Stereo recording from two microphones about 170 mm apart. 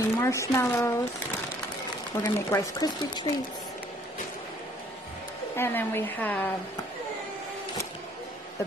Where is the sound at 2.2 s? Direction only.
20° left (ahead or behind).